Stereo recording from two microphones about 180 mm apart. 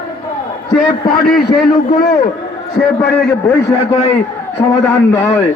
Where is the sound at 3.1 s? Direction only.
65° left (ahead or behind).